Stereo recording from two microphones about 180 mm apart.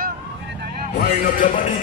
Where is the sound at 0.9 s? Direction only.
50° left (ahead or behind).